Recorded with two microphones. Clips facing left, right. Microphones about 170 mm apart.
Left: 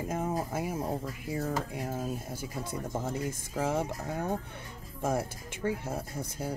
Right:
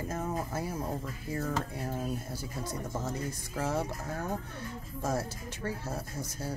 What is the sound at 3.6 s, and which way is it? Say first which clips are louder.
Speech: left 2 dB; 10° left (ahead or behind).